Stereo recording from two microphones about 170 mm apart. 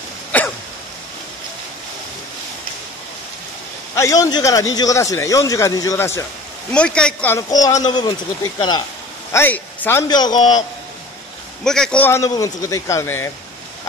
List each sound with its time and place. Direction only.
0.3 s throat clearing: 10° left (ahead or behind)
3.9 s a man's voice: 20° left (ahead or behind)
7.3 s speech: 20° left (ahead or behind)
9.3 s speech: 10° left (ahead or behind)
10.0 s speech: 25° left (ahead or behind)
11.6 s a man's voice: 5° left (ahead or behind)